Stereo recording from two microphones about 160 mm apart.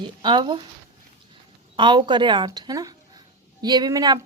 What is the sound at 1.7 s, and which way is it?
Speech, 30° right (ahead or behind).